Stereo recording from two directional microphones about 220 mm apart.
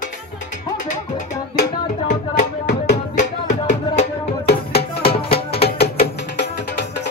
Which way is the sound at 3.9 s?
25° left (ahead or behind).